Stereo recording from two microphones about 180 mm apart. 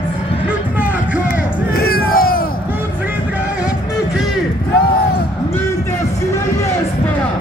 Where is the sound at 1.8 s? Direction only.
55° left (ahead or behind).